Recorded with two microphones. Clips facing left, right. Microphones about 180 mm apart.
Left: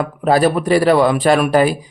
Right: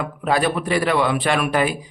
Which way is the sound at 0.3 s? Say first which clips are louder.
Left 7 dB; 40° left (ahead or behind).